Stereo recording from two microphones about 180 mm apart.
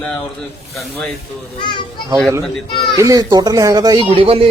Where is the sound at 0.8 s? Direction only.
5° left (ahead or behind).